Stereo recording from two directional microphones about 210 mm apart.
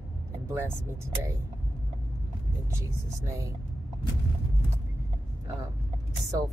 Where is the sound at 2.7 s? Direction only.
15° right (ahead or behind).